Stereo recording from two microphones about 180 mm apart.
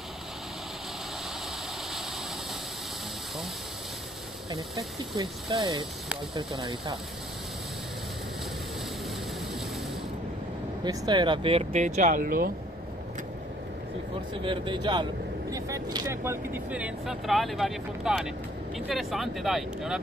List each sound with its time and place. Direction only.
4.5 s speech: 20° right (ahead or behind)
10.8 s speech: 25° right (ahead or behind); by 12.5 s 55° right (ahead or behind)
14.3 s speech: 25° right (ahead or behind); by 20.0 s centre (ahead or behind)